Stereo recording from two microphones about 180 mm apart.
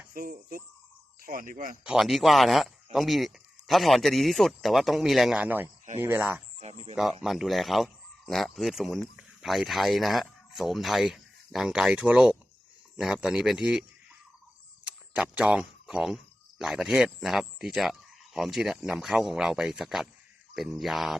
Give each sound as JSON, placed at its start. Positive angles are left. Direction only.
{"t": 0.1, "sound": "speech", "side_deg": -50}
{"t": 1.8, "sound": "speech", "side_deg": -5}
{"t": 6.6, "sound": "speech", "side_deg": -40}
{"t": 7.2, "sound": "speech", "side_deg": 0}
{"t": 14.8, "sound": "speech", "side_deg": -5}